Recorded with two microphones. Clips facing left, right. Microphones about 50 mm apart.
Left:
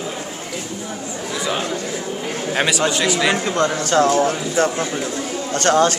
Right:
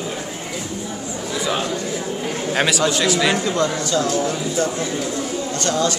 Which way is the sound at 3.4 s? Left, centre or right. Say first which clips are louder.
Left 1 dB; left.